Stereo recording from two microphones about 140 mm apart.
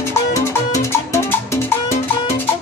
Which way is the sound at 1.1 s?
20° left (ahead or behind).